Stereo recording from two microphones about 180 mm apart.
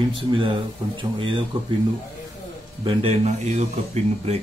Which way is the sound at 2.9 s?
35° right (ahead or behind).